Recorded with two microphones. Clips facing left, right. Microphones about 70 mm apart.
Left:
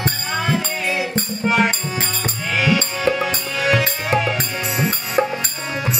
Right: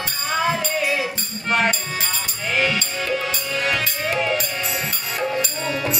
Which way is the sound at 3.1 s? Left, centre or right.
Centre.